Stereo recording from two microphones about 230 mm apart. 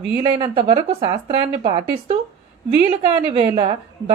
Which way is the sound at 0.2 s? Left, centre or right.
Right.